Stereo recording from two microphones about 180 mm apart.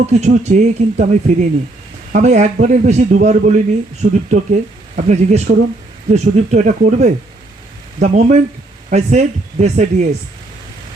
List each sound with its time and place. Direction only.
0.0 s a man's voice: 40° right (ahead or behind)